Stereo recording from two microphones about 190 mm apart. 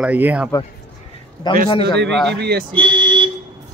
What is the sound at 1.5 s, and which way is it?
Speech, 25° left (ahead or behind).